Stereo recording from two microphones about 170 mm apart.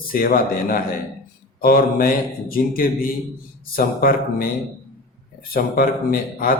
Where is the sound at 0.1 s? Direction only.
60° left (ahead or behind).